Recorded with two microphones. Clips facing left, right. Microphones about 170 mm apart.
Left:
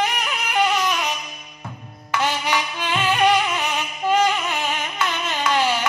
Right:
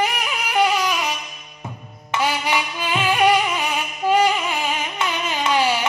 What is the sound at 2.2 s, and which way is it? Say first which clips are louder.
Music: right 1 dB; 10° right (ahead or behind).